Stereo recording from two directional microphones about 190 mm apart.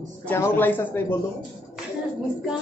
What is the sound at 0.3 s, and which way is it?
Speech, 10° left (ahead or behind).